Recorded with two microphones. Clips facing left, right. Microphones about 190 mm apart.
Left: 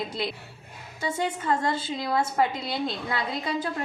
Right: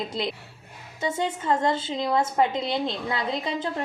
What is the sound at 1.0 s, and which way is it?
A woman's voice, 25° right (ahead or behind).